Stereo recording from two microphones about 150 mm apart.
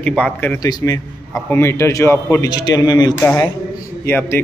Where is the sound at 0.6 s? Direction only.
25° left (ahead or behind).